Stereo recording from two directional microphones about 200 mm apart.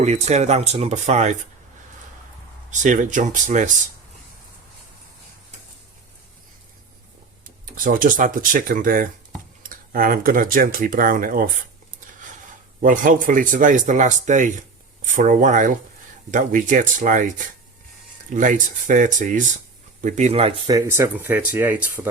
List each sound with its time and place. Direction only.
0.0 s speech: 35° right (ahead or behind)
2.6 s speech: 40° right (ahead or behind)
7.4 s speech: 45° right (ahead or behind)
20.7 s speech: 15° right (ahead or behind)